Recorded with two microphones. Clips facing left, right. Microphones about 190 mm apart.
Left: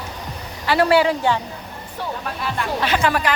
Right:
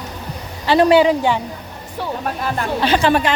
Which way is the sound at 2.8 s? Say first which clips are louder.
Right 5 dB; 30° right (ahead or behind).